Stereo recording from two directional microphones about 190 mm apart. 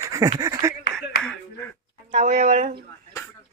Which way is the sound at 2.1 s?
45° right (ahead or behind).